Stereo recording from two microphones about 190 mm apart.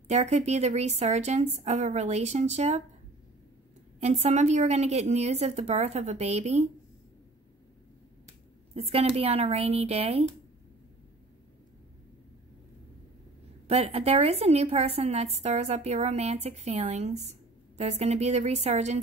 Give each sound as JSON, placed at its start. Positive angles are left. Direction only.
{"t": 0.1, "sound": "a woman's voice", "side_deg": -35}
{"t": 4.0, "sound": "a woman's voice", "side_deg": -35}
{"t": 8.7, "sound": "a woman's voice", "side_deg": -30}
{"t": 13.7, "sound": "a woman's voice", "side_deg": -30}